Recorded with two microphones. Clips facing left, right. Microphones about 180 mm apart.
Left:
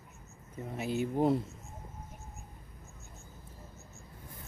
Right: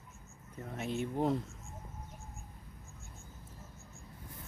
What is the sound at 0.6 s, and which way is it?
Speech, 5° left (ahead or behind).